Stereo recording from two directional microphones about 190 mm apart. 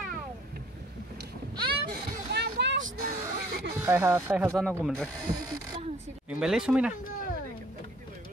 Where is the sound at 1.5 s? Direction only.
25° right (ahead or behind).